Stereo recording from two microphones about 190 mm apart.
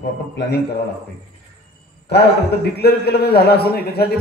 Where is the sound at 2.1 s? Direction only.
60° left (ahead or behind).